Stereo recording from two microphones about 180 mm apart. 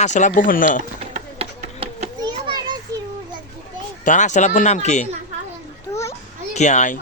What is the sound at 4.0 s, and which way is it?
Speech, 45° left (ahead or behind).